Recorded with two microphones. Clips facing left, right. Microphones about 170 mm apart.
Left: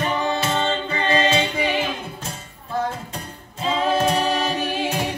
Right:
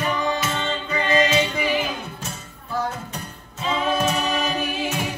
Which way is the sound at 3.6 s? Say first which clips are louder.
Left 2 dB; 30° left (ahead or behind).